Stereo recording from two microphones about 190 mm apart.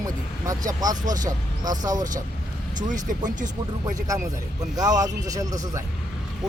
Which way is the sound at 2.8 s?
40° right (ahead or behind).